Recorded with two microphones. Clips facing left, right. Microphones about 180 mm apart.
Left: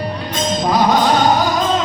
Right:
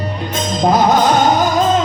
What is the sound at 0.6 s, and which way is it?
Music, 45° right (ahead or behind).